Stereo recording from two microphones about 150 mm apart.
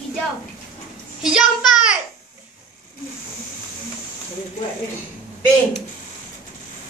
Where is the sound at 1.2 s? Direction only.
5° right (ahead or behind).